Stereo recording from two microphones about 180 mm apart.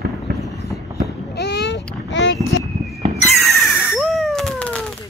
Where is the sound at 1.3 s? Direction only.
70° left (ahead or behind); by 2.3 s 90° left.